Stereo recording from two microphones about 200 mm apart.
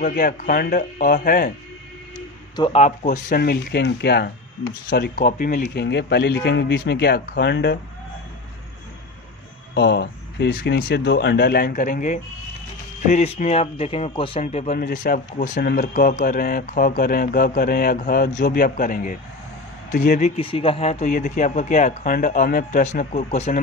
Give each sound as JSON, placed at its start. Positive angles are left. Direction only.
{"t": 0.0, "sound": "speech", "side_deg": 45}
{"t": 2.5, "sound": "a man's voice", "side_deg": 25}
{"t": 2.8, "sound": "speech", "side_deg": 40}
{"t": 9.8, "sound": "speech", "side_deg": 60}